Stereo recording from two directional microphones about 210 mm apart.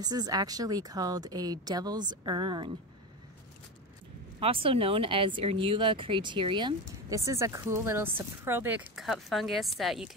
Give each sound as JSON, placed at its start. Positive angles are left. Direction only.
{"t": 0.0, "sound": "speech", "side_deg": -20}
{"t": 4.4, "sound": "speech", "side_deg": -25}